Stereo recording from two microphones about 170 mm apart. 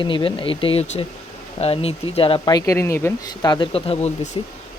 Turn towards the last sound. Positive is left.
turn(degrees=35)  # may be behind; listen again after turning